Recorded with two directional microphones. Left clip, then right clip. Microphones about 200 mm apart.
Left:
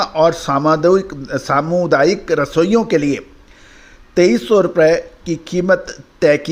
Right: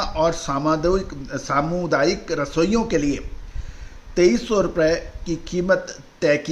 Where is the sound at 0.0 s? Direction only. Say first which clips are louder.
Left 7 dB; 40° left (ahead or behind).